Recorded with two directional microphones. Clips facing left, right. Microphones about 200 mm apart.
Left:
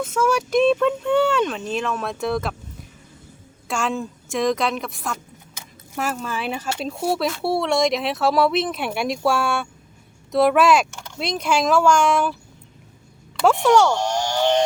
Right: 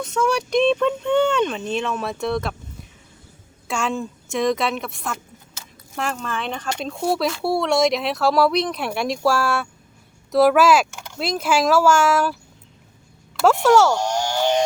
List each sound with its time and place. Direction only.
0.0 s speech: 5° left (ahead or behind)
3.7 s speech: centre (ahead or behind)
13.4 s speech: centre (ahead or behind)